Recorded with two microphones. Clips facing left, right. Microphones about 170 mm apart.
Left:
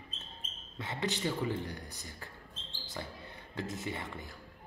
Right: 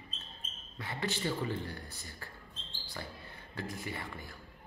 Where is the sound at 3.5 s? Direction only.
20° left (ahead or behind).